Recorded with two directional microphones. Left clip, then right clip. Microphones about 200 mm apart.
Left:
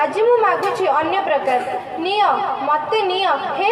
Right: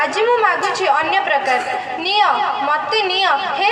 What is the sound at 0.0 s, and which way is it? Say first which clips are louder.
A woman's voice: even; 50° left (ahead or behind).